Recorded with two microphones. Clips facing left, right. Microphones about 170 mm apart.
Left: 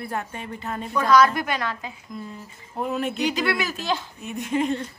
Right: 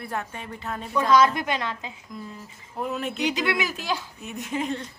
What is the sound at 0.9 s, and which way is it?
Speech, 25° right (ahead or behind).